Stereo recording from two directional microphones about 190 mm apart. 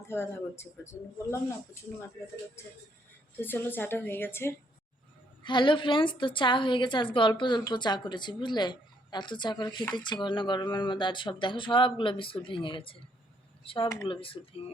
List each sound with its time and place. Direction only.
0.1 s speech: 10° left (ahead or behind)
3.4 s speech: 10° left (ahead or behind)
5.4 s a woman's voice: 25° left (ahead or behind)
14.1 s a woman's voice: 30° left (ahead or behind)